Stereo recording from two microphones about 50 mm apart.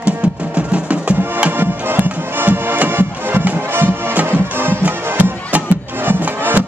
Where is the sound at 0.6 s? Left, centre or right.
Right.